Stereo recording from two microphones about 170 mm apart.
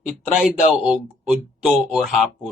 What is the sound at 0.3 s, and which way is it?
Speech, 5° right (ahead or behind).